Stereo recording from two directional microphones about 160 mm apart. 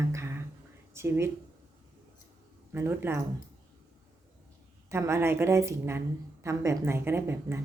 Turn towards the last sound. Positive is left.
turn(degrees=-15)  # may be behind; listen again after turning